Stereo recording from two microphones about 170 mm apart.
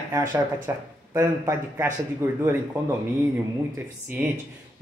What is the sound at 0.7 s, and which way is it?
Speech, 15° right (ahead or behind).